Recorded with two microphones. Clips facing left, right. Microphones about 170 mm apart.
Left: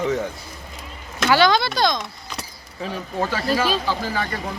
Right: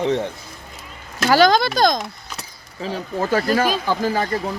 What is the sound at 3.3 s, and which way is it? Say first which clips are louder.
Speech: right 4 dB; 50° right (ahead or behind).